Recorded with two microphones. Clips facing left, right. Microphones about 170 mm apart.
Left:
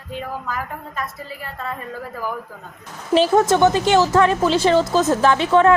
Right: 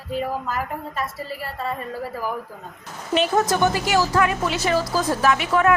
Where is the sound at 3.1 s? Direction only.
30° left (ahead or behind).